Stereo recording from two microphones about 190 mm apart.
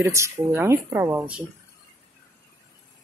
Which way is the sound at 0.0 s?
15° right (ahead or behind).